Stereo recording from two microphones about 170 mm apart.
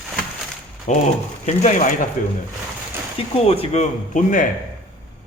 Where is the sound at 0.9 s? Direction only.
45° left (ahead or behind).